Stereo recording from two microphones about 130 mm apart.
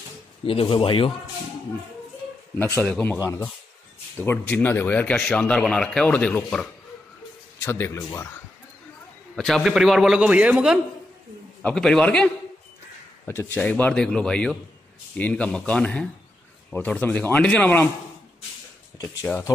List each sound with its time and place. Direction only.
0.5 s speech: 45° left (ahead or behind)
2.6 s speech: 20° left (ahead or behind)
7.6 s speech: 20° left (ahead or behind)
9.3 s a man's voice: centre (ahead or behind)
11.6 s speech: 5° left (ahead or behind)
13.2 s speech: 20° left (ahead or behind)